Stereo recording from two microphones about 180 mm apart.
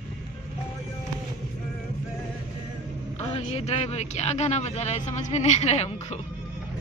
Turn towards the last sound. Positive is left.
turn(degrees=35)  # may be behind; listen again after turning